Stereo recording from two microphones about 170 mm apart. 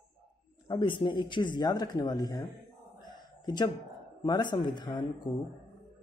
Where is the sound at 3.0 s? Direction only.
25° left (ahead or behind).